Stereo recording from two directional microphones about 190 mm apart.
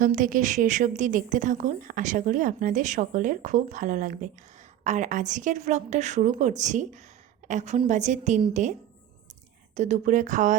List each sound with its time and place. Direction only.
0.0 s a woman's voice: 45° right (ahead or behind)
9.7 s a woman's voice: 40° right (ahead or behind)